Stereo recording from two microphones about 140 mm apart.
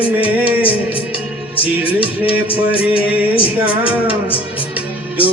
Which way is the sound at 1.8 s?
40° left (ahead or behind).